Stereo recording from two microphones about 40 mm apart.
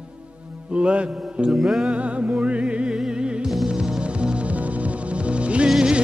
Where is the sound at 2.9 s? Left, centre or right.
Centre.